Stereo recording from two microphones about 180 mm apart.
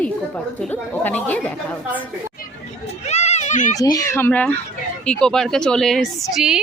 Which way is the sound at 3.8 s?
20° left (ahead or behind).